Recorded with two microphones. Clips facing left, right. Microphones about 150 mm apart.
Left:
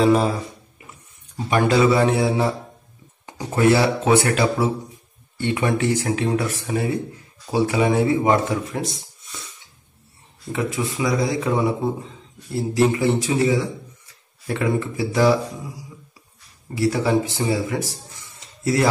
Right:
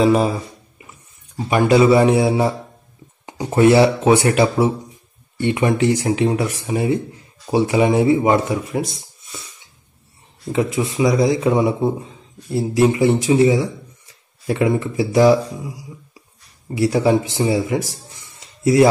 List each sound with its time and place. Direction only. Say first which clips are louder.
0.0 s speech: right 2 dB; 5° right (ahead or behind)
1.3 s speech: right 4 dB; 10° right (ahead or behind)
10.5 s speech: right 5 dB; 20° right (ahead or behind)
16.7 s speech: right 4 dB; 20° right (ahead or behind)